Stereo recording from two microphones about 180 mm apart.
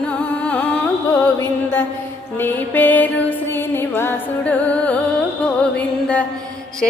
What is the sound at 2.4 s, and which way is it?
Music, 10° left (ahead or behind).